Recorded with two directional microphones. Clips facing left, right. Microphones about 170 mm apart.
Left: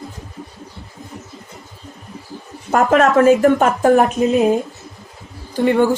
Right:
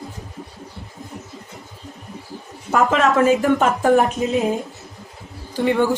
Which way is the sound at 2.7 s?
50° left (ahead or behind).